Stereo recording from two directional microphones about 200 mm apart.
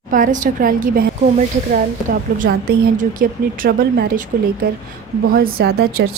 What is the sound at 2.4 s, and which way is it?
A woman's voice, 45° right (ahead or behind).